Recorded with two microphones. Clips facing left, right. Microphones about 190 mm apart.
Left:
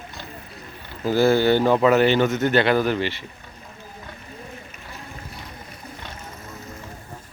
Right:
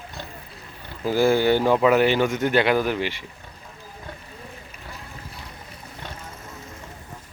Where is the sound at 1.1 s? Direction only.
10° right (ahead or behind).